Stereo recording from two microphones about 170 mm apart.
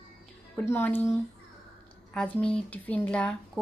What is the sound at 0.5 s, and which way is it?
A woman's voice, 10° left (ahead or behind).